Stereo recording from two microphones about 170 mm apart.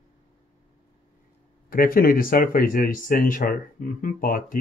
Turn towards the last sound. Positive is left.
turn(degrees=55)  # may be behind; listen again after turning